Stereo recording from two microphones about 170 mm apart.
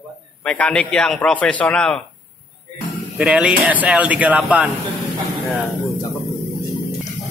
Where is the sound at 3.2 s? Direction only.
5° right (ahead or behind).